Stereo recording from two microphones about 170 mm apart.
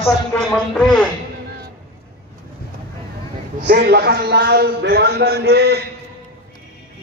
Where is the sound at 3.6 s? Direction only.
75° right (ahead or behind).